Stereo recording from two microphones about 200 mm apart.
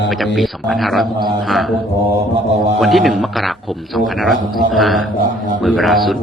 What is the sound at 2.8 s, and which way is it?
A man's voice, centre (ahead or behind).